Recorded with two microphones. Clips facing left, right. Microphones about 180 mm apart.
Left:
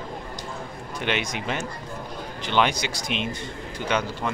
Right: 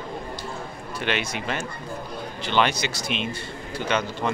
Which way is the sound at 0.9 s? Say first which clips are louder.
Even; 15° left (ahead or behind).